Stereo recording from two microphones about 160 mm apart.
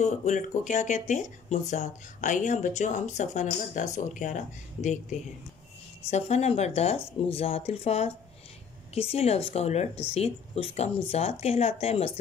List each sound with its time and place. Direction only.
0.0 s speech: 45° left (ahead or behind)
6.0 s a woman's voice: 40° left (ahead or behind)